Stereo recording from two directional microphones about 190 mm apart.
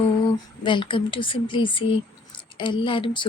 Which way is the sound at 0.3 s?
25° left (ahead or behind).